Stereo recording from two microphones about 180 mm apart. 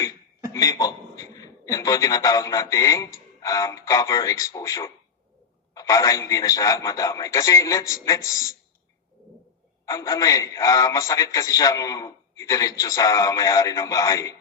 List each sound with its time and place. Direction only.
0.5 s a man's voice: 20° left (ahead or behind)
9.8 s a man's voice: 20° left (ahead or behind)